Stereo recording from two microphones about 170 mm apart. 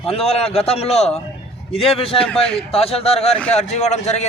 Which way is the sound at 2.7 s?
35° left (ahead or behind).